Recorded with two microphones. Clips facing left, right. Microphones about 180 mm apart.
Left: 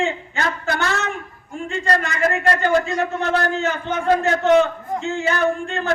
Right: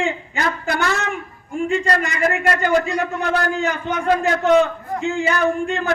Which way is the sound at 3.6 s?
15° right (ahead or behind).